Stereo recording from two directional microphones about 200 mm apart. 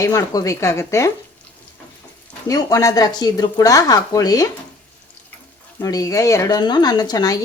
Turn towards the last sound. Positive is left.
turn(degrees=20)  # may be behind; listen again after turning